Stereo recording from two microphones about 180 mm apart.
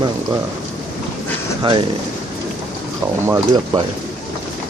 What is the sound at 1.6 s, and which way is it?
Speech, 25° right (ahead or behind).